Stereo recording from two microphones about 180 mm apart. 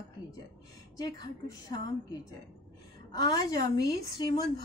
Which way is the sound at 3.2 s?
20° left (ahead or behind).